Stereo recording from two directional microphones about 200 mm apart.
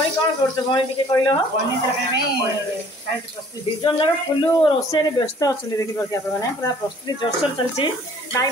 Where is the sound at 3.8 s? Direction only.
25° left (ahead or behind).